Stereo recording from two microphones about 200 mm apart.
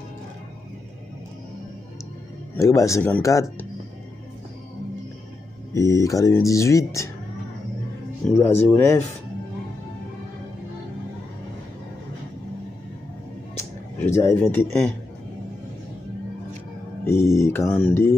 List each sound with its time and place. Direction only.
2.5 s speech: 15° left (ahead or behind)
5.8 s speech: 15° left (ahead or behind)
8.4 s speech: 10° left (ahead or behind)
13.6 s a sound: 10° left (ahead or behind)
17.0 s speech: 15° left (ahead or behind)